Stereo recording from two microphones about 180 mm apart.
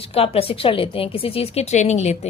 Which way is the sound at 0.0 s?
30° left (ahead or behind).